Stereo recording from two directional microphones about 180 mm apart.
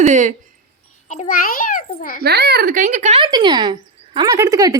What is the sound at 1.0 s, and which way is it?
A child's voice, 40° left (ahead or behind).